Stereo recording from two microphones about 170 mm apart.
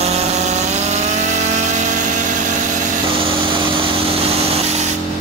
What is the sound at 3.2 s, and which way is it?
Vehicle, 30° right (ahead or behind).